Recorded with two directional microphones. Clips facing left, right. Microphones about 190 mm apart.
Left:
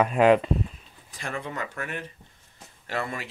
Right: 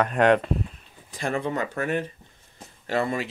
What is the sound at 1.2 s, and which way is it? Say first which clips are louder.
Speech: right 7 dB; 35° right (ahead or behind).